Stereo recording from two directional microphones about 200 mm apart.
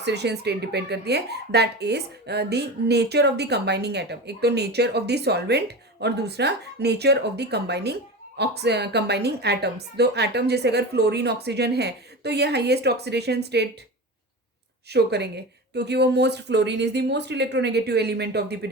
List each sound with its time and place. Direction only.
0.0 s speech: 55° right (ahead or behind)
14.8 s speech: 55° right (ahead or behind)